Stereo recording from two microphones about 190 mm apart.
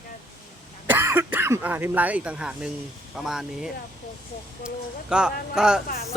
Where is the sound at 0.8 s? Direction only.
10° right (ahead or behind).